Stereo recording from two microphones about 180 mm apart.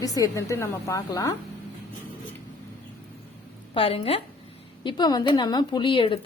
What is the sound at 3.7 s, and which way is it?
A woman's voice, 30° left (ahead or behind).